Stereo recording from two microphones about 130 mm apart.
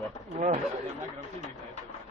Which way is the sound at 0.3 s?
75° right (ahead or behind).